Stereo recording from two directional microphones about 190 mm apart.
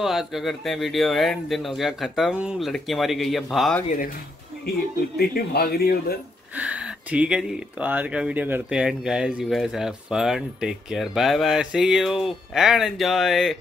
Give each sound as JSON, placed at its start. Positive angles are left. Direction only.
{"t": 0.0, "sound": "speech", "side_deg": 0}
{"t": 5.1, "sound": "speech", "side_deg": 55}
{"t": 6.5, "sound": "speech", "side_deg": -5}